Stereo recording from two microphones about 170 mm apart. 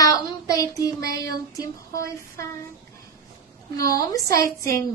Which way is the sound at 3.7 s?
20° left (ahead or behind).